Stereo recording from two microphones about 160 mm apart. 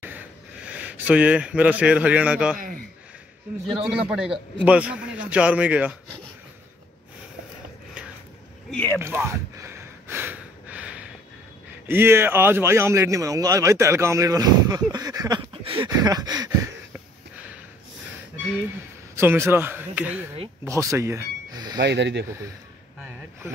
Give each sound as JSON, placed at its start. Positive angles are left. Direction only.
{"t": 0.7, "sound": "a man's voice", "side_deg": -10}
{"t": 3.8, "sound": "a man's voice", "side_deg": -5}
{"t": 8.6, "sound": "a man's voice", "side_deg": 5}
{"t": 9.0, "sound": "gasp", "side_deg": -15}
{"t": 11.9, "sound": "a man's voice", "side_deg": -15}
{"t": 15.6, "sound": "a sound", "side_deg": -35}
{"t": 15.9, "sound": "a sound", "side_deg": -25}
{"t": 19.1, "sound": "a man's voice", "side_deg": -15}
{"t": 21.7, "sound": "speech", "side_deg": -90}